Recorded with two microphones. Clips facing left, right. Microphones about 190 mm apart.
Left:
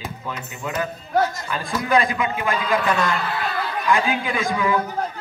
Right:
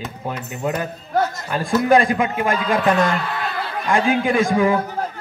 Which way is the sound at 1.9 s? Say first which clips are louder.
Right 3 dB; 50° right (ahead or behind).